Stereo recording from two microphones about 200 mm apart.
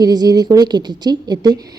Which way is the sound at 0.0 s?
20° right (ahead or behind).